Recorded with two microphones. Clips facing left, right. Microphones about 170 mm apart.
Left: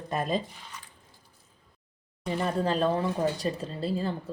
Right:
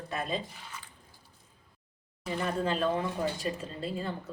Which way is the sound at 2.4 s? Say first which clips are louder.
Left 3 dB; 35° left (ahead or behind).